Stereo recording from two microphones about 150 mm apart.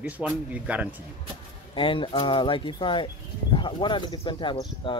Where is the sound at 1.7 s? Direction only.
35° left (ahead or behind).